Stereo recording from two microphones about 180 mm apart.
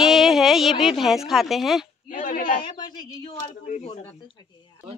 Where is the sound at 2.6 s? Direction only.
25° left (ahead or behind).